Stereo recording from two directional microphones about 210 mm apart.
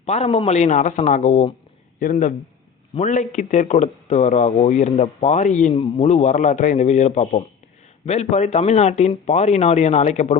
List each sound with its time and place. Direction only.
0.1 s speech: 30° left (ahead or behind)